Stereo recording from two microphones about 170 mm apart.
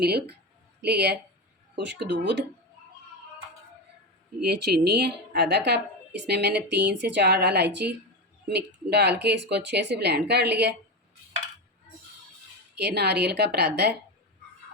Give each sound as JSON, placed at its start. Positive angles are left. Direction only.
{"t": 0.0, "sound": "speech", "side_deg": -75}
{"t": 1.7, "sound": "speech", "side_deg": -90}
{"t": 4.4, "sound": "speech", "side_deg": -70}
{"t": 12.7, "sound": "speech", "side_deg": -75}